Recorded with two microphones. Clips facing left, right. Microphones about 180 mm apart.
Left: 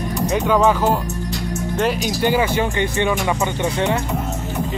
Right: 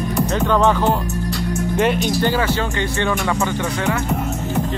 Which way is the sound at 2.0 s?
15° left (ahead or behind).